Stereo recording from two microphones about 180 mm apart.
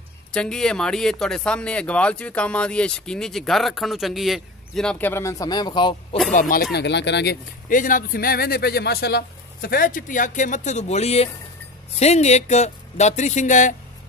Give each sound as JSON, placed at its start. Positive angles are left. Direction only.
{"t": 0.3, "sound": "speech", "side_deg": 5}
{"t": 6.5, "sound": "speech", "side_deg": 65}
{"t": 7.7, "sound": "speech", "side_deg": 50}